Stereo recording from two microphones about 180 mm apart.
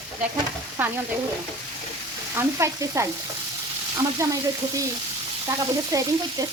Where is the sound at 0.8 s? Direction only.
10° right (ahead or behind).